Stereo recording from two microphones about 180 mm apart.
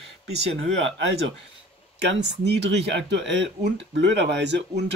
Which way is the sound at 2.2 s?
70° right (ahead or behind).